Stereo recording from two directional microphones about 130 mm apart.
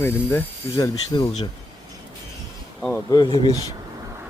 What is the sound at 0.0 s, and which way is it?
Speech, 20° left (ahead or behind).